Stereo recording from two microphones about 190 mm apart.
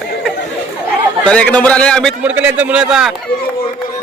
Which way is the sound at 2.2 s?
10° right (ahead or behind).